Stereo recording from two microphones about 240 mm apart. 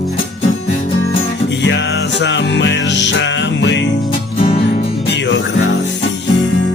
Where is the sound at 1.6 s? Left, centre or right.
Left.